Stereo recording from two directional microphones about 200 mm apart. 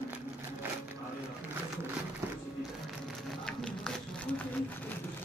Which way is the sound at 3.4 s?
5° left (ahead or behind).